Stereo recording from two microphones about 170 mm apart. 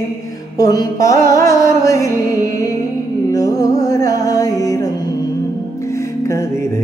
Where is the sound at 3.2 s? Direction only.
20° left (ahead or behind).